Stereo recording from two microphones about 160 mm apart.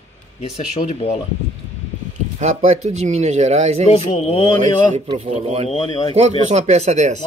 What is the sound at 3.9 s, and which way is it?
Speech, 40° left (ahead or behind).